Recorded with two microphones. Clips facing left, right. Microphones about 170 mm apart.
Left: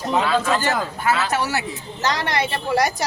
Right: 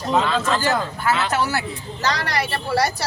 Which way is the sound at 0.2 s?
10° left (ahead or behind).